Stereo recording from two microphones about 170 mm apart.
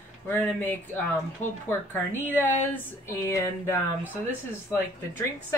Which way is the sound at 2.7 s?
15° left (ahead or behind).